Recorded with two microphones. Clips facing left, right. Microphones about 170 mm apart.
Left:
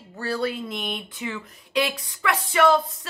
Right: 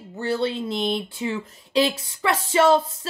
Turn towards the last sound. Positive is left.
turn(degrees=-30)  # may be behind; listen again after turning